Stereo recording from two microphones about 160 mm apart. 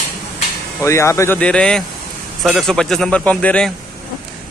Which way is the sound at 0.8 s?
15° left (ahead or behind).